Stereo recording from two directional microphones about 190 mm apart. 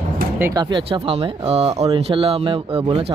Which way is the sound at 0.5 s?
25° right (ahead or behind).